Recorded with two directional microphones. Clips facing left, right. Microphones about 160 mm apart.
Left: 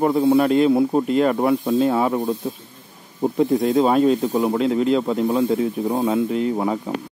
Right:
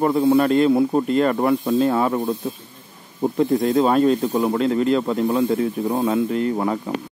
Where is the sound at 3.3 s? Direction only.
5° left (ahead or behind).